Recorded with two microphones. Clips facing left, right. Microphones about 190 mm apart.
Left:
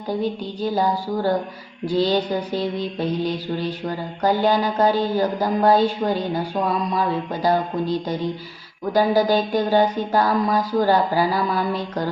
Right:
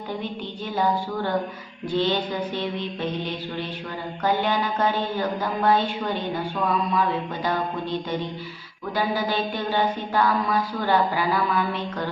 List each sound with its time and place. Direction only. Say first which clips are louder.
0.2 s mantra: left 7 dB; 35° left (ahead or behind)
7.4 s mantra: left 7 dB; 35° left (ahead or behind)
8.9 s mantra: left 8 dB; 40° left (ahead or behind)